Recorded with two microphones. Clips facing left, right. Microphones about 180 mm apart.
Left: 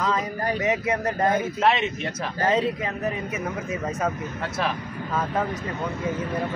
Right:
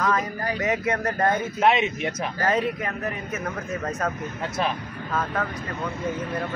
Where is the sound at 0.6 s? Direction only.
15° left (ahead or behind).